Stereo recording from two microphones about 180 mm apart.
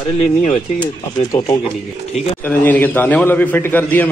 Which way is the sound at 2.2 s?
10° left (ahead or behind).